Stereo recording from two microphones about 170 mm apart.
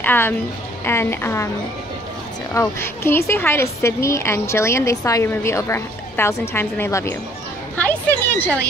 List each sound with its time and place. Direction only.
0.0 s a woman's voice: 10° left (ahead or behind)
2.5 s a woman's voice: 15° left (ahead or behind)
7.7 s a sound: 10° left (ahead or behind)